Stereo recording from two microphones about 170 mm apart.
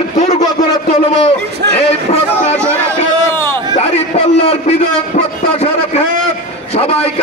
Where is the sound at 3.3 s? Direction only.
15° left (ahead or behind).